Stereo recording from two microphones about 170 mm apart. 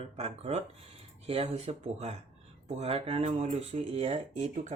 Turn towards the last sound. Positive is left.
turn(degrees=-45)  # may be behind; listen again after turning